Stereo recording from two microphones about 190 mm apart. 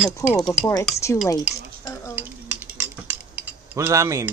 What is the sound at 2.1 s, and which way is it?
Speech, 10° right (ahead or behind).